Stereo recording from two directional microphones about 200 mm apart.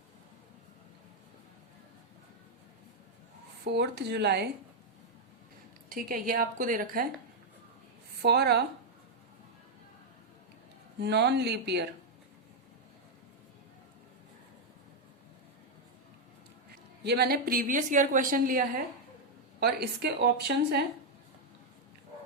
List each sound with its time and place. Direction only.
3.7 s speech: 55° right (ahead or behind)
5.9 s a woman's voice: 45° right (ahead or behind)
8.2 s speech: 55° right (ahead or behind)
11.0 s speech: 55° right (ahead or behind)
17.0 s a woman's voice: 55° right (ahead or behind)